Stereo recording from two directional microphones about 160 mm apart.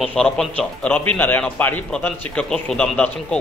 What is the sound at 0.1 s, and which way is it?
A man's voice, 5° left (ahead or behind).